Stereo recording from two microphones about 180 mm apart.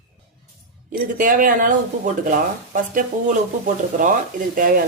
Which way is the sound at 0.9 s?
50° right (ahead or behind).